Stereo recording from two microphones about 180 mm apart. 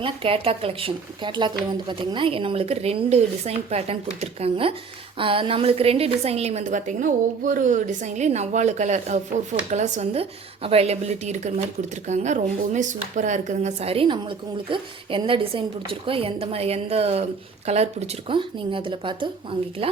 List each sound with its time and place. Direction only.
0.0 s a woman's voice: 30° right (ahead or behind)